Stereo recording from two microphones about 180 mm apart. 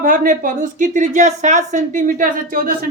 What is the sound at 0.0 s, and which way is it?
Speech, 50° right (ahead or behind).